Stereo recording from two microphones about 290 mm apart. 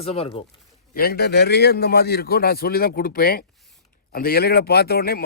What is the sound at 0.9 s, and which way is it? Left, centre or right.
Speech, left.